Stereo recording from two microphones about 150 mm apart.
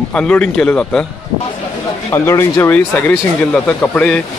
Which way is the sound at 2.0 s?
20° left (ahead or behind).